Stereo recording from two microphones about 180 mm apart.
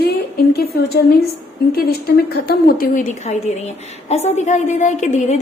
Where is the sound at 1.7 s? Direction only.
55° left (ahead or behind).